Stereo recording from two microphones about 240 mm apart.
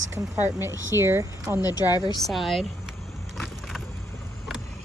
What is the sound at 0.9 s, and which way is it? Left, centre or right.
Speech, centre.